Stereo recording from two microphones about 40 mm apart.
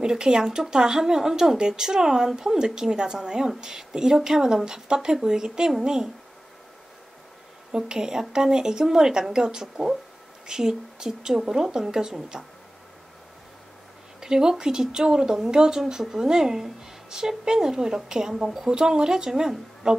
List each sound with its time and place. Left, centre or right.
0.0 s speech: centre
7.7 s speech: centre
14.2 s speech: centre
18.7 s speech: centre